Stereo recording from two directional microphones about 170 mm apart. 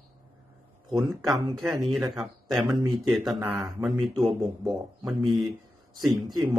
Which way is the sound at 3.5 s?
5° right (ahead or behind).